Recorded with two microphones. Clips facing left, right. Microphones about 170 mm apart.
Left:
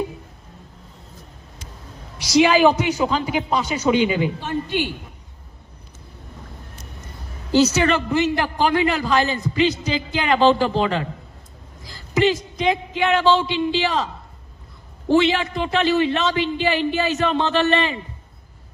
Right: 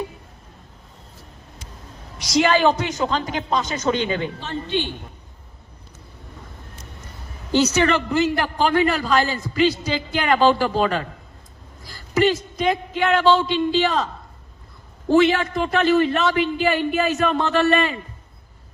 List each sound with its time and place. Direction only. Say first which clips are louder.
2.3 s a man's voice: left 3 dB; 5° left (ahead or behind)
7.9 s a man's voice: even; 15° left (ahead or behind)